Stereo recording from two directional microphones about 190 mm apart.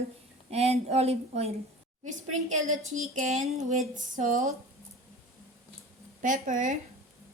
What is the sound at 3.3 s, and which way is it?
A woman's voice, 40° right (ahead or behind).